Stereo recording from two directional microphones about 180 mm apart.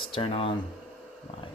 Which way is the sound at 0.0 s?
30° left (ahead or behind).